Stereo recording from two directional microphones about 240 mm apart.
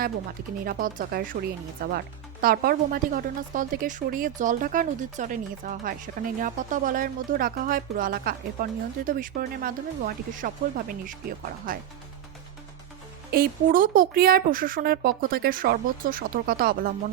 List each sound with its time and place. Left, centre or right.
0.6 s speech: right
13.3 s speech: right